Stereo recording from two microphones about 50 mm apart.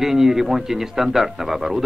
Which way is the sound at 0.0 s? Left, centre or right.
Centre.